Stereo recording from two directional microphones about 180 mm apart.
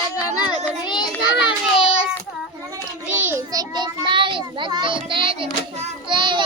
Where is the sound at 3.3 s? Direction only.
20° right (ahead or behind).